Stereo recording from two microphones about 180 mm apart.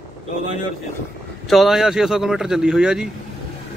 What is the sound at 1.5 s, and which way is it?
Speech, centre (ahead or behind).